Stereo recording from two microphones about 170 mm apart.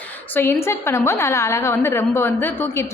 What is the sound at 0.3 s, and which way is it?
A woman's voice, 15° left (ahead or behind).